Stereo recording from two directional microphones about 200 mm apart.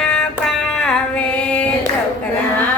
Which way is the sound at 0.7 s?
5° left (ahead or behind).